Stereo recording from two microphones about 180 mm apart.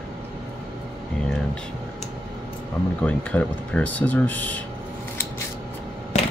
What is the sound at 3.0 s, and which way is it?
Speech, 10° left (ahead or behind).